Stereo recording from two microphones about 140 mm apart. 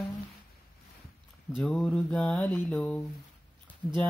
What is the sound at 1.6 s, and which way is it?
Mantra, 5° left (ahead or behind).